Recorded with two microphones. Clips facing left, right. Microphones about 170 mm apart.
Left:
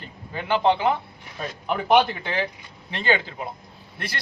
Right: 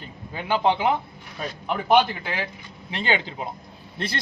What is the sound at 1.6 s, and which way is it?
Speech, centre (ahead or behind).